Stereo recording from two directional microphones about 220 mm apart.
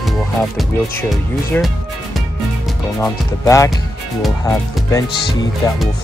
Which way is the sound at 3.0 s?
15° left (ahead or behind).